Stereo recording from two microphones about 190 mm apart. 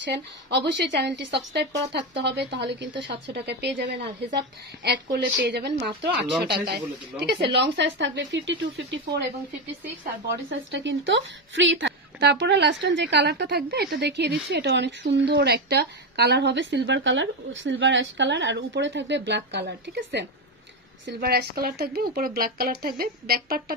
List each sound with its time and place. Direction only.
0.0 s speech: 60° right (ahead or behind)
7.5 s a woman's voice: 70° right (ahead or behind)
10.3 s a woman's voice: 70° right (ahead or behind); by 23.6 s 55° right (ahead or behind)